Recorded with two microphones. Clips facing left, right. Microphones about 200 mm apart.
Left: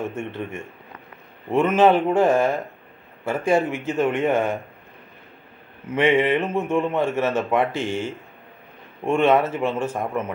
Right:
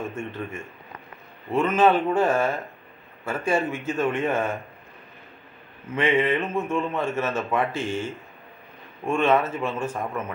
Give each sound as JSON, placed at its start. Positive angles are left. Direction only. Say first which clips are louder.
{"t": 0.1, "sound": "a man's voice", "louder": "left 3 dB", "side_deg": 15}
{"t": 1.8, "sound": "a man's voice", "louder": "left 3 dB", "side_deg": 15}
{"t": 5.9, "sound": "a man's voice", "louder": "left 4 dB", "side_deg": 15}